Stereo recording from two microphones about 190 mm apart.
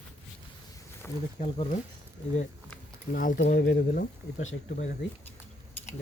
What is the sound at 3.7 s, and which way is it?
Speech, 50° left (ahead or behind).